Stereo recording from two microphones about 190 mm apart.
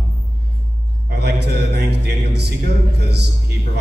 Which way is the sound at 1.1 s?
60° right (ahead or behind).